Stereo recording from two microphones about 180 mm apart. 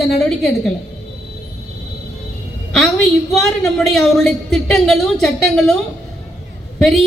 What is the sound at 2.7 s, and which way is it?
A woman's voice, centre (ahead or behind).